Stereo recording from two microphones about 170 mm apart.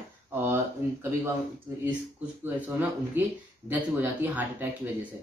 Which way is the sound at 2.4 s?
10° right (ahead or behind).